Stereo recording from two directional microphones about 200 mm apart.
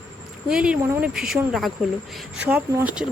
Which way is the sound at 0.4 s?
5° right (ahead or behind).